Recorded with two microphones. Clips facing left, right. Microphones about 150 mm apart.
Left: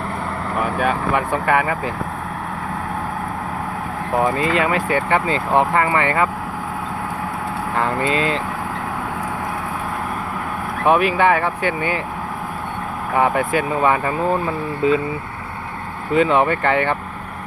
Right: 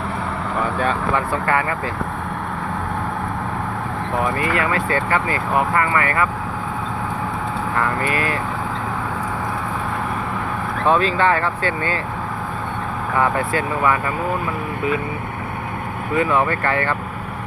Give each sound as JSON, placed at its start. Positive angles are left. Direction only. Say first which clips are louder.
{"t": 0.5, "sound": "speech", "louder": "left 1 dB", "side_deg": 10}
{"t": 4.1, "sound": "speech", "louder": "left 3 dB", "side_deg": 20}
{"t": 7.8, "sound": "speech", "louder": "left 3 dB", "side_deg": 20}
{"t": 10.8, "sound": "speech", "louder": "left 2 dB", "side_deg": 15}
{"t": 13.1, "sound": "speech", "louder": "left 2 dB", "side_deg": 20}
{"t": 16.1, "sound": "speech", "louder": "left 3 dB", "side_deg": 20}